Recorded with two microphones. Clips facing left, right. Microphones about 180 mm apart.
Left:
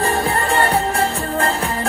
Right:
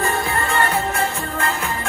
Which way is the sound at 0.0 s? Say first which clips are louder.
Left 3 dB; 35° left (ahead or behind).